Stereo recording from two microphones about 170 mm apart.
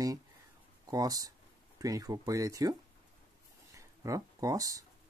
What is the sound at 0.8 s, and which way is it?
Speech, 20° right (ahead or behind).